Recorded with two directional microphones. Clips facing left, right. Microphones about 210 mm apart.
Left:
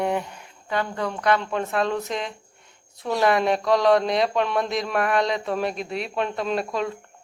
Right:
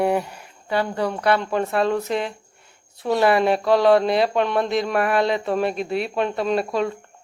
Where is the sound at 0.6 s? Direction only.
30° right (ahead or behind).